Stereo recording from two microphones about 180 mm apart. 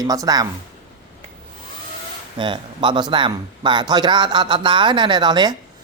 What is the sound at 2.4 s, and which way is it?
A man's voice, 25° right (ahead or behind).